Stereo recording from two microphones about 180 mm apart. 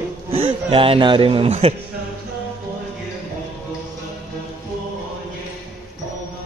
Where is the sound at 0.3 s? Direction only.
30° right (ahead or behind).